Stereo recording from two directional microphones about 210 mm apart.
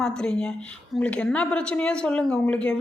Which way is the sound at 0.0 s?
5° left (ahead or behind).